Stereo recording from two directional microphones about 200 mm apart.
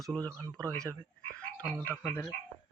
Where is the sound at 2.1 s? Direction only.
15° left (ahead or behind).